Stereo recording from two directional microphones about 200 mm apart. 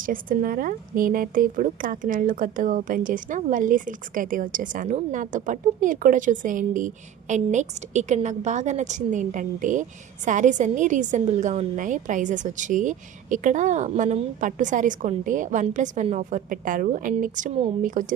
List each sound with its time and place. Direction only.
0.0 s a woman's voice: 45° right (ahead or behind)